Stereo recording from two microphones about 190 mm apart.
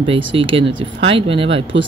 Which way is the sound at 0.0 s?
25° right (ahead or behind).